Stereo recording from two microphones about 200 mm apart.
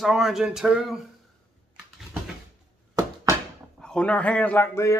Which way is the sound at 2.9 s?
15° right (ahead or behind).